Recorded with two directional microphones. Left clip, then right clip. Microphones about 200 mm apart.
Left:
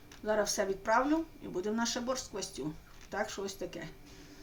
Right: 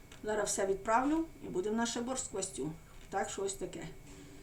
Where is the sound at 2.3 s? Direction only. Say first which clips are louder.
Even; 20° left (ahead or behind).